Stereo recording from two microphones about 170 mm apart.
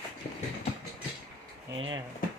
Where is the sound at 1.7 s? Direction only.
30° right (ahead or behind).